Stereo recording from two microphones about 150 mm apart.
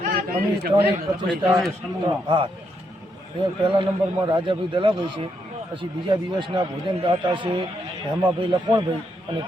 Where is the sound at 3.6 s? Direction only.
35° right (ahead or behind).